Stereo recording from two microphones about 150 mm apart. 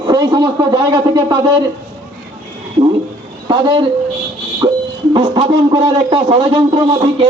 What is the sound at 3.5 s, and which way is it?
Speech, 30° right (ahead or behind).